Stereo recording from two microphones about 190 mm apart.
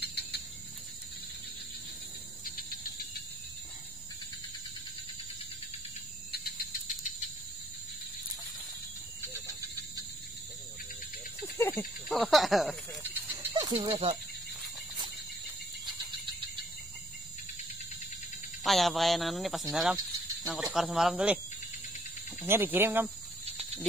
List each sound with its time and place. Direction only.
0.0 s a sound: 60° left (ahead or behind)
2.4 s cricket: 50° left (ahead or behind)
6.3 s cricket: 50° left (ahead or behind)
11.5 s cricket: 15° left (ahead or behind)
11.8 s snake: centre (ahead or behind)
13.3 s a sound: 20° right (ahead or behind)
18.6 s speech: centre (ahead or behind)
22.4 s speech: 10° right (ahead or behind)